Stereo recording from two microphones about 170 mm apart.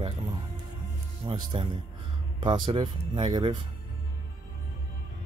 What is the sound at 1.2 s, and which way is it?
Speech, 25° right (ahead or behind).